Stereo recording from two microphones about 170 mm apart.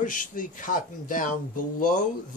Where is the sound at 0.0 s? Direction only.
50° left (ahead or behind).